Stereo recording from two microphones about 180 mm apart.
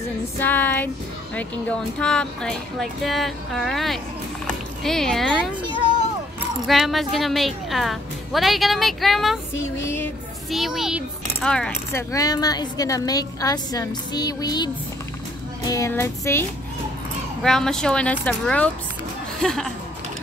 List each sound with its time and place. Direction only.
0.4 s a sound: 10° left (ahead or behind)
1.3 s speech: 5° left (ahead or behind)
6.7 s speech: centre (ahead or behind)
9.6 s a sound: 15° left (ahead or behind)
10.5 s a child's voice: centre (ahead or behind)
12.1 s a woman's voice: 20° left (ahead or behind)
15.6 s music: 20° left (ahead or behind)
17.4 s speech: 5° left (ahead or behind)